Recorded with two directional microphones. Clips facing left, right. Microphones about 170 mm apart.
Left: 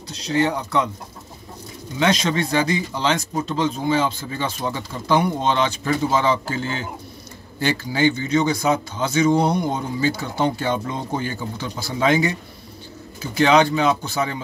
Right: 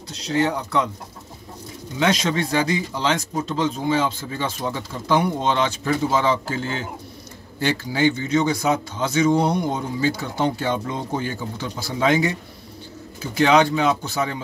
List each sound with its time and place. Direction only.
0.3 s speech: centre (ahead or behind)
2.0 s speech: 5° right (ahead or behind)
13.4 s speech: 5° right (ahead or behind)